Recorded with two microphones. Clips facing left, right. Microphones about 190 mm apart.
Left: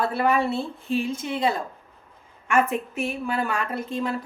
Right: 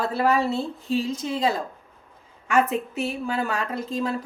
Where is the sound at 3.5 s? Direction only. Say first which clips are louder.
Even; 35° right (ahead or behind).